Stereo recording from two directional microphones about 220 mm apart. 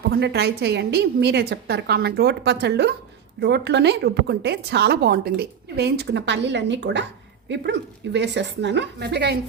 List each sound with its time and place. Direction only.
0.1 s a woman's voice: 45° right (ahead or behind)